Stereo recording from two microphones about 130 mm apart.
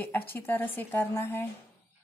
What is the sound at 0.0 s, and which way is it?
A woman's voice, 15° left (ahead or behind).